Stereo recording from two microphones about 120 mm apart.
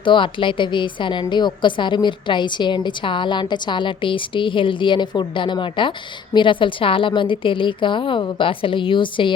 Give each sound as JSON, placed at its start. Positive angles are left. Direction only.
{"t": 0.0, "sound": "a woman's voice", "side_deg": 45}